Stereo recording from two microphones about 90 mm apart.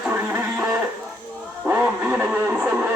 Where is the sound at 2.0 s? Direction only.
15° right (ahead or behind).